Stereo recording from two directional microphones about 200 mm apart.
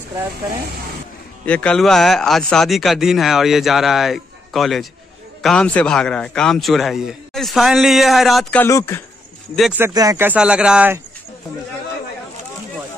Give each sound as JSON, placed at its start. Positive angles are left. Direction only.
{"t": 0.1, "sound": "speech", "side_deg": -15}
{"t": 1.4, "sound": "speech", "side_deg": 5}
{"t": 8.6, "sound": "a man's voice", "side_deg": 15}
{"t": 9.6, "sound": "speech", "side_deg": -10}